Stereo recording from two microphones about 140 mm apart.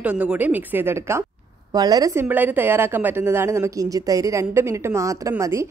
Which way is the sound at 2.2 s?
15° right (ahead or behind).